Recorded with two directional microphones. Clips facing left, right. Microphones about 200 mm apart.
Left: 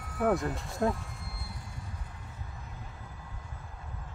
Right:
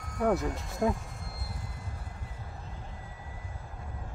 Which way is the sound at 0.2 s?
Centre (ahead or behind).